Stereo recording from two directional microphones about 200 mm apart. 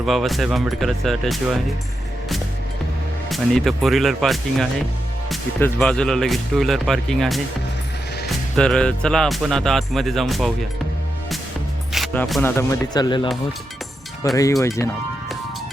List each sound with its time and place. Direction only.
0.0 s speech: centre (ahead or behind)
3.2 s speech: centre (ahead or behind)
11.9 s music: centre (ahead or behind)
12.5 s speech: 15° left (ahead or behind)
14.2 s speech: 15° left (ahead or behind)